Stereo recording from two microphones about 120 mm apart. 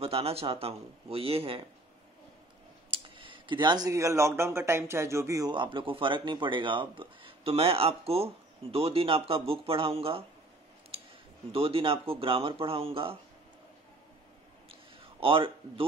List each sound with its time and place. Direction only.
0.0 s speech: 55° right (ahead or behind)
2.9 s clicking: 45° right (ahead or behind)
3.9 s speech: 25° right (ahead or behind)
5.5 s speech: 45° right (ahead or behind)
11.5 s speech: 50° right (ahead or behind)
14.7 s a sound: 50° right (ahead or behind)